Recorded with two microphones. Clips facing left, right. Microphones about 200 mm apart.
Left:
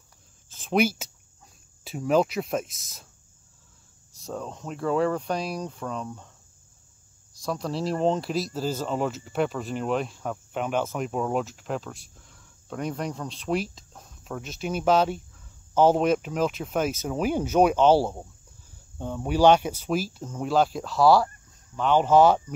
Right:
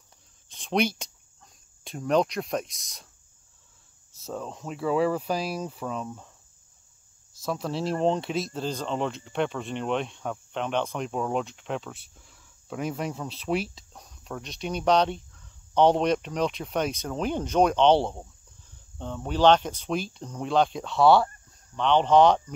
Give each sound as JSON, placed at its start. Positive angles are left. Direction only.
{"t": 0.5, "sound": "speech", "side_deg": 5}
{"t": 4.1, "sound": "speech", "side_deg": 0}
{"t": 7.4, "sound": "speech", "side_deg": 0}